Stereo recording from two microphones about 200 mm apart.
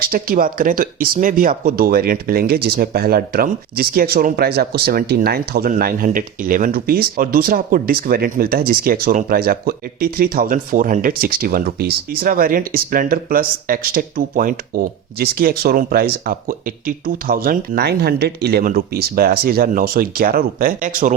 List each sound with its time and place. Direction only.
0.0 s speech: 45° right (ahead or behind)